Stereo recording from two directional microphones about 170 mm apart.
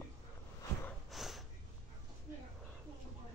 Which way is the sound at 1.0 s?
Centre (ahead or behind).